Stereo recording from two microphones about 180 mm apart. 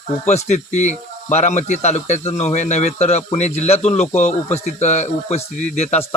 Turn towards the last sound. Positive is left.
turn(degrees=35)  # may be behind; listen again after turning